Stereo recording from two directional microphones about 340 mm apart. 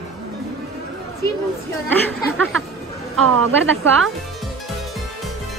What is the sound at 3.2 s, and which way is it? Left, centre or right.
Speech, right.